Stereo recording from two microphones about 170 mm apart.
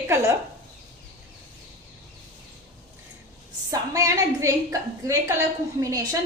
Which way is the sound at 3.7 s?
20° right (ahead or behind).